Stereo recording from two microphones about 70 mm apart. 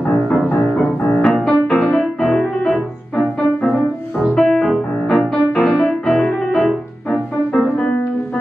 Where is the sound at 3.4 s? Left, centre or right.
Left.